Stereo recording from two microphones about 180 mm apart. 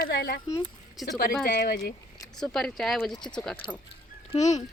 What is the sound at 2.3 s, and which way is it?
Speech, centre (ahead or behind).